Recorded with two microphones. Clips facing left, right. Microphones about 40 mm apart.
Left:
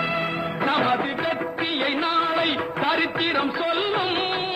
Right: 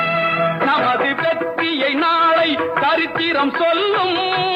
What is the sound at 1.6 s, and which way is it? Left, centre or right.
Music, right.